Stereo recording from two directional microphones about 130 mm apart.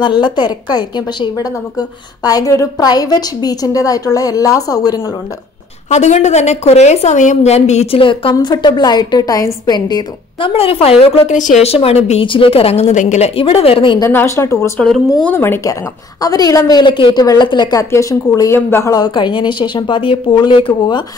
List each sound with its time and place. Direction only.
0.0 s speech: 35° left (ahead or behind)
5.9 s a woman's voice: 60° left (ahead or behind)
11.3 s a woman's voice: 70° left (ahead or behind)
13.4 s a woman's voice: 45° left (ahead or behind)
14.1 s a woman's voice: 20° left (ahead or behind); by 21.0 s 40° left (ahead or behind)